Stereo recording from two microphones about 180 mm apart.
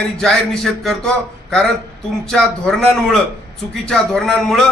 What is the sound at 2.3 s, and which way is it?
A man's voice, 5° left (ahead or behind).